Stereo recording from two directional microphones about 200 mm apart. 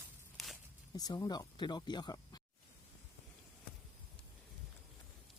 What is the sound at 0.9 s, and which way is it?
Speech, 20° left (ahead or behind).